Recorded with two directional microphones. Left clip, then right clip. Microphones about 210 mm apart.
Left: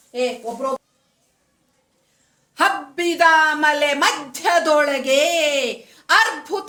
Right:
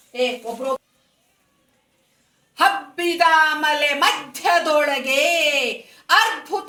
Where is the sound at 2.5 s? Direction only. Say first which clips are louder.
Right 1 dB; 45° left (ahead or behind).